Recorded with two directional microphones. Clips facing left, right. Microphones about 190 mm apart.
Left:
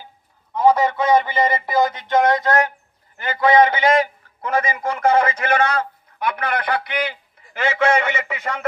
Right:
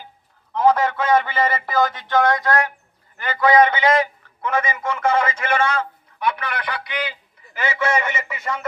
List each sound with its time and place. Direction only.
0.5 s a man's voice: 10° left (ahead or behind); by 8.6 s 60° left (ahead or behind)